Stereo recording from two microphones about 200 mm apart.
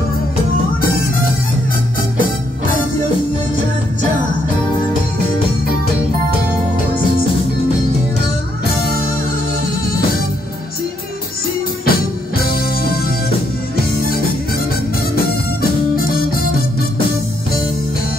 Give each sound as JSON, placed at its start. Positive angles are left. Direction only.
{"t": 11.8, "sound": "music", "side_deg": 50}
{"t": 16.0, "sound": "music", "side_deg": 45}